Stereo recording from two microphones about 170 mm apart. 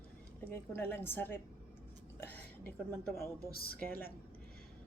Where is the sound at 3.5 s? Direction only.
60° left (ahead or behind).